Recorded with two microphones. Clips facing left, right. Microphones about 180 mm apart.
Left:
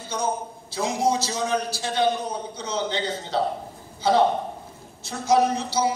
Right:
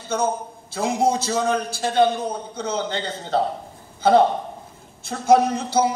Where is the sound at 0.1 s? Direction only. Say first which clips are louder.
Right 4 dB; 55° right (ahead or behind).